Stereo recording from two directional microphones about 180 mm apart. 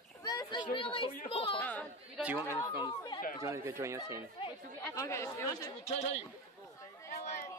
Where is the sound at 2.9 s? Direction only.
25° left (ahead or behind).